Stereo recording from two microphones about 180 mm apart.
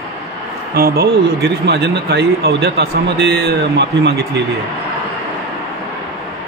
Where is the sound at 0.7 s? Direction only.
55° right (ahead or behind).